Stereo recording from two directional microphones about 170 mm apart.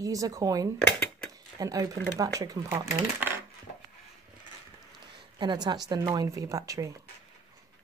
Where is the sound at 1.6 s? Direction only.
20° right (ahead or behind).